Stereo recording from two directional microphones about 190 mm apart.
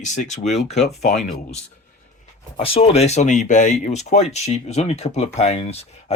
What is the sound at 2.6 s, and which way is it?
Speech, 30° left (ahead or behind).